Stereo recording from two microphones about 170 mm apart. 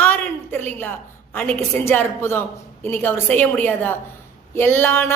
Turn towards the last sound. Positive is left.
turn(degrees=15)  # may be behind; listen again after turning